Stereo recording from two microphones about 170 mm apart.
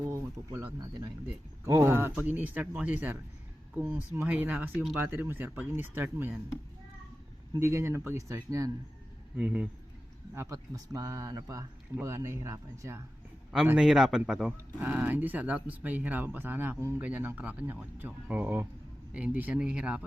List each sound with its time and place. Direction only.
0.0 s speech: 15° right (ahead or behind)
7.6 s speech: 15° right (ahead or behind)
9.3 s speech: 10° right (ahead or behind)
10.3 s speech: 20° right (ahead or behind)
13.5 s speech: 5° right (ahead or behind)